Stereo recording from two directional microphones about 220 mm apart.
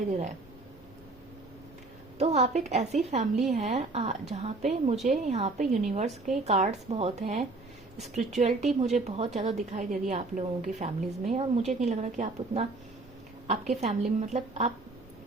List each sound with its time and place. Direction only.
2.1 s a woman's voice: 30° right (ahead or behind)
13.8 s a woman's voice: 30° right (ahead or behind)